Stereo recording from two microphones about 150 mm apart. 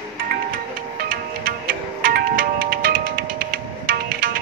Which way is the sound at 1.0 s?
70° right (ahead or behind).